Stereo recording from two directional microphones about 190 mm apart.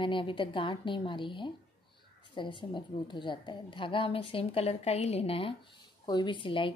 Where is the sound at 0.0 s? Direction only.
25° left (ahead or behind).